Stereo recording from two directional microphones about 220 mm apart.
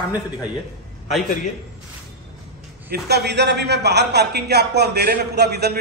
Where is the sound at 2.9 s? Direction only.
50° right (ahead or behind).